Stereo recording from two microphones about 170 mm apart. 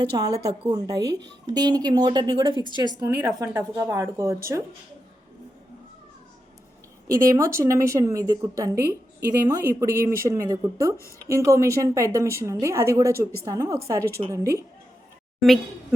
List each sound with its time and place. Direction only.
0.0 s a woman's voice: 25° right (ahead or behind)
7.1 s a woman's voice: 20° right (ahead or behind)
15.4 s a woman's voice: centre (ahead or behind)